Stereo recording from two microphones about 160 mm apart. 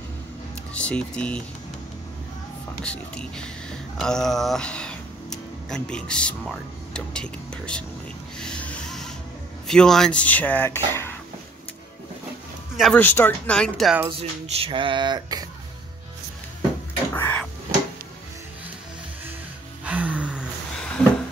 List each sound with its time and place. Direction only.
0.7 s speech: 5° left (ahead or behind)
2.8 s speech: 5° left (ahead or behind)
8.4 s music: 5° left (ahead or behind)
9.7 s speech: 5° left (ahead or behind)
12.7 s speech: centre (ahead or behind)
13.0 s speech: 10° left (ahead or behind)
14.0 s a sound: 35° right (ahead or behind)
17.1 s a sound: 10° left (ahead or behind)
19.8 s music: 10° right (ahead or behind)
20.7 s a sound: 5° left (ahead or behind)